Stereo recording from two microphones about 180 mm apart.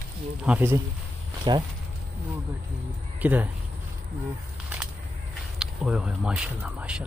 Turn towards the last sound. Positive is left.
turn(degrees=-5)  # may be behind; listen again after turning